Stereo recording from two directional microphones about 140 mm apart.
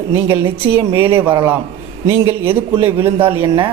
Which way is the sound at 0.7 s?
15° right (ahead or behind).